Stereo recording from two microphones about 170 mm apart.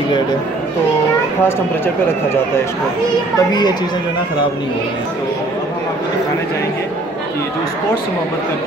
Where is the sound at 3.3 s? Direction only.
25° left (ahead or behind).